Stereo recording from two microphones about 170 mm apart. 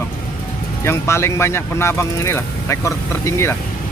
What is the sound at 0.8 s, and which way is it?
Speech, 15° left (ahead or behind).